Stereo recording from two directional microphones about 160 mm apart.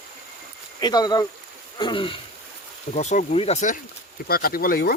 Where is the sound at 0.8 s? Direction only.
25° left (ahead or behind).